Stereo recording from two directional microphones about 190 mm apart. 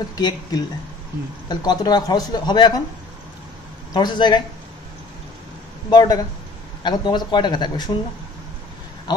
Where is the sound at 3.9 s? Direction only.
25° left (ahead or behind).